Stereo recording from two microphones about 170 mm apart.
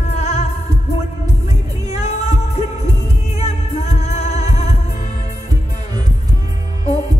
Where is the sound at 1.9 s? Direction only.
40° left (ahead or behind).